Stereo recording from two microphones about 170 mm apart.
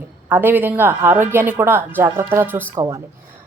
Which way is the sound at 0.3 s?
10° right (ahead or behind).